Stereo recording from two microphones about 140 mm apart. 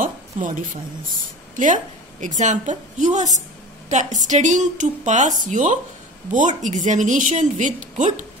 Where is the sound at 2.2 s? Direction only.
65° right (ahead or behind).